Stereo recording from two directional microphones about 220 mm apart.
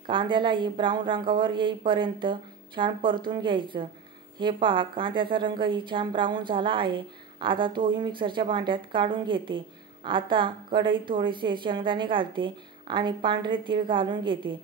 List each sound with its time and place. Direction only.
0.0 s a woman's voice: 20° right (ahead or behind)